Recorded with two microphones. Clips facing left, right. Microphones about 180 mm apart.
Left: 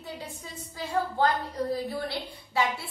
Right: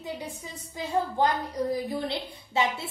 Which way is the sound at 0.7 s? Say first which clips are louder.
Right 1 dB; 15° right (ahead or behind).